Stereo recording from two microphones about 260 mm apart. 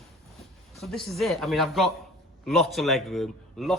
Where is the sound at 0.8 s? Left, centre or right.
Centre.